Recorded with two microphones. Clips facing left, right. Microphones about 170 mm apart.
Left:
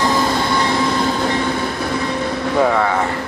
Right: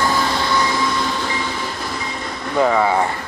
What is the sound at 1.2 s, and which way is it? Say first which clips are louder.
Train: left 6 dB; 60° left (ahead or behind).